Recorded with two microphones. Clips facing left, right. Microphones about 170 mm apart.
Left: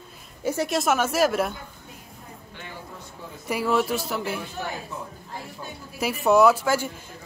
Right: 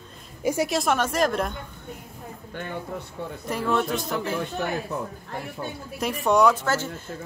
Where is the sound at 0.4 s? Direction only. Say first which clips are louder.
Right 2 dB; 15° right (ahead or behind).